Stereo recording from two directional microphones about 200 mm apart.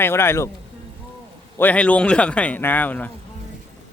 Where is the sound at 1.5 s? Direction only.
10° left (ahead or behind).